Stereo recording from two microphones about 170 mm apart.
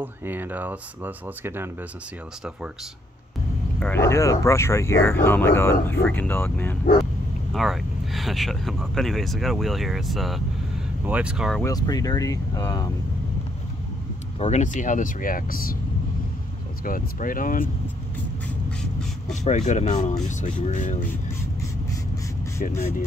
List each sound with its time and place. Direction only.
0.0 s speech: 10° right (ahead or behind)
3.8 s speech: 15° left (ahead or behind)
7.5 s speech: centre (ahead or behind)
11.6 s speech: 20° left (ahead or behind)
14.4 s speech: 45° left (ahead or behind)
16.8 s speech: 55° left (ahead or behind)
19.4 s speech: 45° left (ahead or behind)